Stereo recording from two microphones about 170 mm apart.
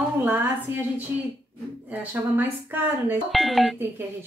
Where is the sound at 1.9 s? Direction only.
10° right (ahead or behind).